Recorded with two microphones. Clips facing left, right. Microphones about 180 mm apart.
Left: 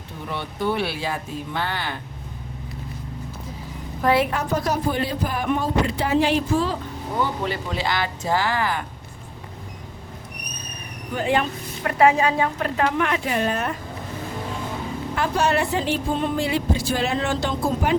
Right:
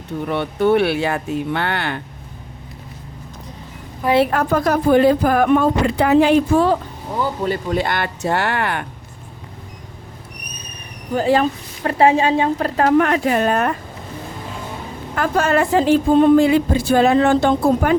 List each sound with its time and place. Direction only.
0.3 s speech: 60° right (ahead or behind)
4.3 s speech: 55° right (ahead or behind)
7.4 s speech: 50° right (ahead or behind); by 8.9 s 65° right (ahead or behind)
11.1 s a woman's voice: 35° right (ahead or behind); by 13.7 s 60° right (ahead or behind)
15.1 s speech: 50° right (ahead or behind)